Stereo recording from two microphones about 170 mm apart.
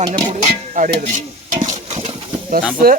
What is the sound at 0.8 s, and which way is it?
Speech, 50° right (ahead or behind).